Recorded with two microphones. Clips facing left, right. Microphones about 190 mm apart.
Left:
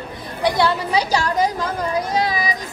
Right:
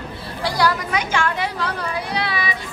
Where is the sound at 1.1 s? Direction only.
40° left (ahead or behind).